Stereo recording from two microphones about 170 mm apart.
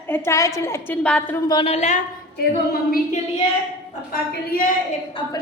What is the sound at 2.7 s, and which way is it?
Speech, 60° left (ahead or behind).